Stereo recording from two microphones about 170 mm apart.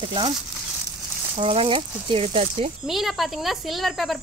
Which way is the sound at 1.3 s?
30° right (ahead or behind).